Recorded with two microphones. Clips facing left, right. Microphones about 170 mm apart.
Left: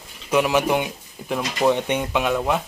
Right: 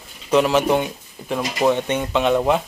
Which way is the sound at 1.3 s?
15° right (ahead or behind).